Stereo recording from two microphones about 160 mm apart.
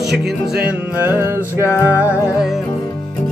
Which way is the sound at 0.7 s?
10° right (ahead or behind).